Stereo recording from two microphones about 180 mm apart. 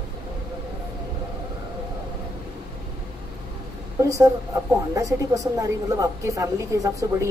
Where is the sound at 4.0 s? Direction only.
15° right (ahead or behind).